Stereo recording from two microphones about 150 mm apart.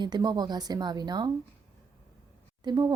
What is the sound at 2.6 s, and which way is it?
Speech, 30° right (ahead or behind).